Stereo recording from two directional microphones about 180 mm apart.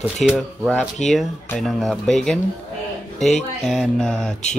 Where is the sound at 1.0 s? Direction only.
40° left (ahead or behind).